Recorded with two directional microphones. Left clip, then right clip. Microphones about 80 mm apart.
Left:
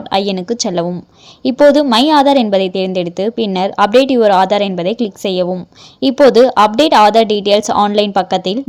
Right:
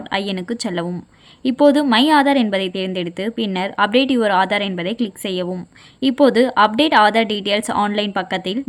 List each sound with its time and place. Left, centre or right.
0.1 s a woman's voice: left
1.7 s a woman's voice: left